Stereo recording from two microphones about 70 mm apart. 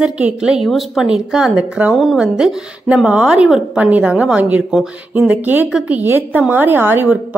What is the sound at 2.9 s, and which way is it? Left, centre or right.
A woman's voice, centre.